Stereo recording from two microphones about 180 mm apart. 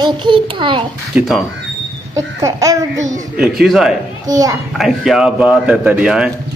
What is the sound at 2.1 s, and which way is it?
Speech, 20° right (ahead or behind).